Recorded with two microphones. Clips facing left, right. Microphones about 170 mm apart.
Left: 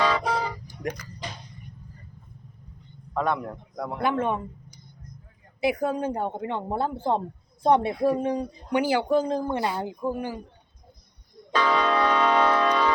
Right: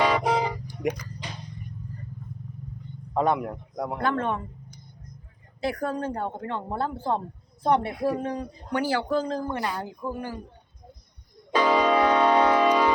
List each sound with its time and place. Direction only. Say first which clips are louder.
0.0 s vehicle: right 2 dB; 15° right (ahead or behind)
3.2 s a man's voice: right 3 dB; 20° right (ahead or behind)
3.9 s speech: left 2 dB; 10° left (ahead or behind)
5.5 s speech: left 3 dB; 10° left (ahead or behind)
11.5 s music: right 2 dB; 10° right (ahead or behind)